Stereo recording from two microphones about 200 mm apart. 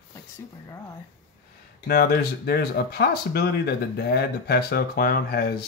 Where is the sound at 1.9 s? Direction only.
50° left (ahead or behind).